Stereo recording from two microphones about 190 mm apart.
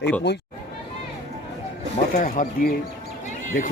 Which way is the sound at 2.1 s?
45° left (ahead or behind).